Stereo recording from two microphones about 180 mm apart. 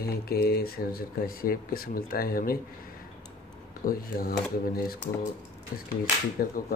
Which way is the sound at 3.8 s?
55° left (ahead or behind).